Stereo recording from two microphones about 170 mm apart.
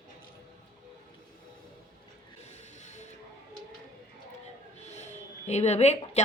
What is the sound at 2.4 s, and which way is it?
Mechanisms, 45° left (ahead or behind).